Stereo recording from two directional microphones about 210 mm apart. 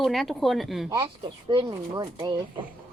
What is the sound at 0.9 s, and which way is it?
Speech, 20° right (ahead or behind).